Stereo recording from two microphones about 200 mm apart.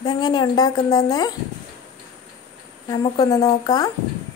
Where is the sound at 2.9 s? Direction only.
20° left (ahead or behind).